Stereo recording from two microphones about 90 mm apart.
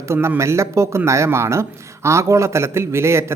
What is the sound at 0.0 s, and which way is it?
Speech, 30° right (ahead or behind).